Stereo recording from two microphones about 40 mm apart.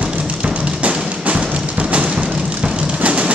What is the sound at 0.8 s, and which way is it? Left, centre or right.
Music, right.